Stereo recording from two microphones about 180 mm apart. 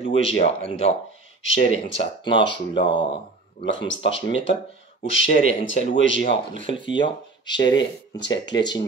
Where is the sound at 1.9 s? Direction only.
25° left (ahead or behind).